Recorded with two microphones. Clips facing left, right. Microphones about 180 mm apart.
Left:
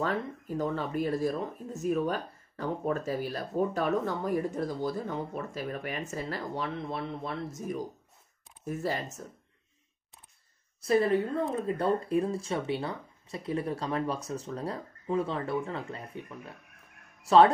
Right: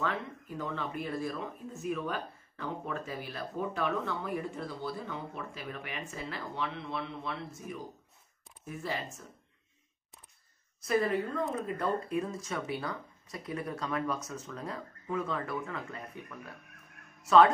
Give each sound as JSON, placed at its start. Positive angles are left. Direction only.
{"t": 0.0, "sound": "speech", "side_deg": 40}
{"t": 10.8, "sound": "a woman's voice", "side_deg": 30}